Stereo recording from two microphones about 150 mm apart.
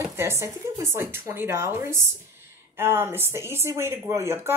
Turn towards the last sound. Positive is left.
turn(degrees=-15)  # may be behind; listen again after turning